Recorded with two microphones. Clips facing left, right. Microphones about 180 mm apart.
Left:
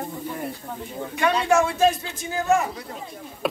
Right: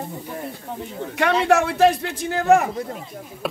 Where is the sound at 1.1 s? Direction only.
70° right (ahead or behind).